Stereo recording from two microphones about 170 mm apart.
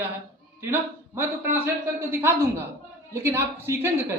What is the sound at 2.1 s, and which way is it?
Speech, 15° right (ahead or behind).